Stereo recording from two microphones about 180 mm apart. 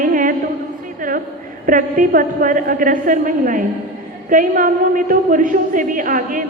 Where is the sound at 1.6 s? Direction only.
50° right (ahead or behind).